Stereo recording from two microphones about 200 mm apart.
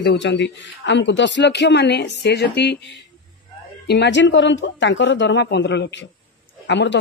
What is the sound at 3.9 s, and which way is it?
Speech, 60° left (ahead or behind).